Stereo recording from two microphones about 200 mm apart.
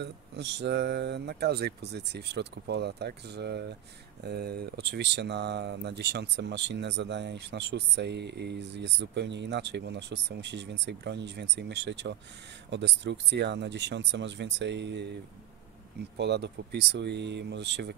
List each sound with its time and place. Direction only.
0.0 s speech: 55° right (ahead or behind)
16.2 s speech: 60° right (ahead or behind)